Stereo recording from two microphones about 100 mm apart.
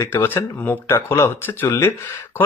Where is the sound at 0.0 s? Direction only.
25° left (ahead or behind).